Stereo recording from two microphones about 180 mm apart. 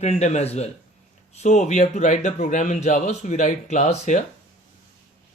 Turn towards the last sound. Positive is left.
turn(degrees=40)  # may be behind; listen again after turning